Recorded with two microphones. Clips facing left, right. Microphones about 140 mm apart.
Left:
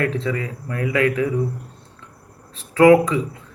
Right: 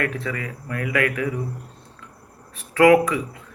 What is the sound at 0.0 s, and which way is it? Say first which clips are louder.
Speech: left 4 dB; 25° left (ahead or behind).